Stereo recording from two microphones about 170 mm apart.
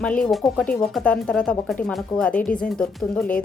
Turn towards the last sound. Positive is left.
turn(degrees=5)  # may be behind; listen again after turning